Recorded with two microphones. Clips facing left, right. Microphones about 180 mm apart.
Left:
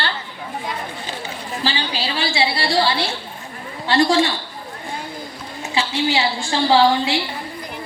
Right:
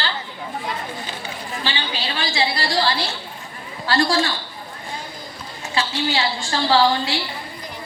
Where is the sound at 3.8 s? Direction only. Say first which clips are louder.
Left 3 dB; 20° left (ahead or behind).